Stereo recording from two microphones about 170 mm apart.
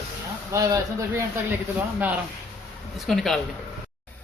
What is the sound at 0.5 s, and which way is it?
Speech, 20° right (ahead or behind).